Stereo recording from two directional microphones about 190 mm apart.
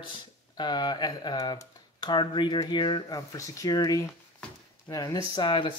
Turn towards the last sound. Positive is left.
turn(degrees=25)  # may be behind; listen again after turning